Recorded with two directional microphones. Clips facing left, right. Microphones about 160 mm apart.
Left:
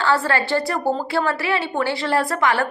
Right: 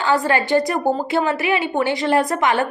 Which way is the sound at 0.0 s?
15° right (ahead or behind).